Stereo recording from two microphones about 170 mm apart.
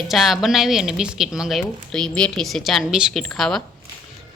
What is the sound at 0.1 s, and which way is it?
A woman's voice, centre (ahead or behind).